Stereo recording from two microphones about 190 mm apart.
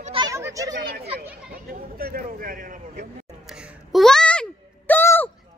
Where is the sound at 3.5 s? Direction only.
Centre (ahead or behind).